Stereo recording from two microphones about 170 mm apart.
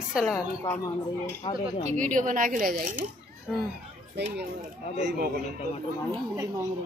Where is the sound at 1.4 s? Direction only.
25° left (ahead or behind).